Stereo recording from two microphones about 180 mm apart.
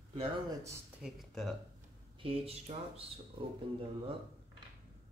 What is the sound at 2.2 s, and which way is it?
Speech, 30° right (ahead or behind).